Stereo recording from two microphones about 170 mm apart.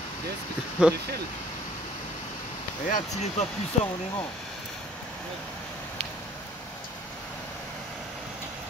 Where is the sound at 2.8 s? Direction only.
50° left (ahead or behind).